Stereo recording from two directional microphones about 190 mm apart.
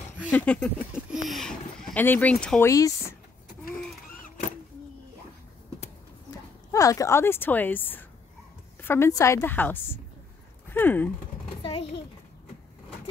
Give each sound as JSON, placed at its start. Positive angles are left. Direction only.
{"t": 0.3, "sound": "speech", "side_deg": 5}
{"t": 2.7, "sound": "speech", "side_deg": 15}
{"t": 6.7, "sound": "speech", "side_deg": 15}
{"t": 10.7, "sound": "a sound", "side_deg": 10}